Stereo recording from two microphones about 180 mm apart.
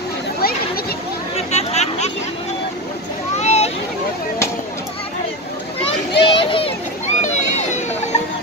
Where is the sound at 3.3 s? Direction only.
40° left (ahead or behind).